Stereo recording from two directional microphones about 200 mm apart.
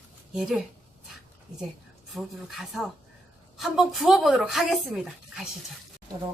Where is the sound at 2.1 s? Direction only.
Centre (ahead or behind).